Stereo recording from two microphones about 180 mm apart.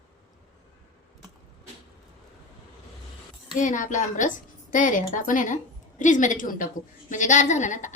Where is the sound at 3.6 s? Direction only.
45° left (ahead or behind).